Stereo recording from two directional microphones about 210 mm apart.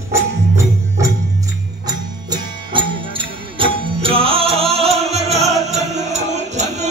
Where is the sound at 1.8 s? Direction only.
20° right (ahead or behind).